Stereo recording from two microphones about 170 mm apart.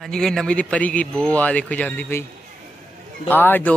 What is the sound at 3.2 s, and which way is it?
Speech, 10° left (ahead or behind).